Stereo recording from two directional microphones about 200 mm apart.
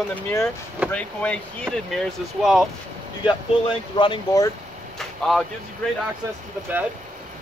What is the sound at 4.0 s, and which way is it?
Speech, 20° left (ahead or behind).